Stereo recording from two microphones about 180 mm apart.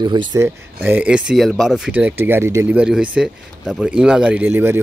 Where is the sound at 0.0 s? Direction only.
25° right (ahead or behind).